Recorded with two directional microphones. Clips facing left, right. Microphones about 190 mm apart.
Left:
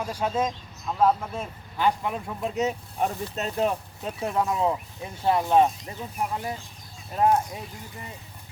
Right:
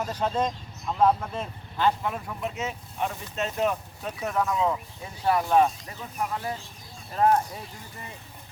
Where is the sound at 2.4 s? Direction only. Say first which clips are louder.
Left 7 dB; 35° left (ahead or behind).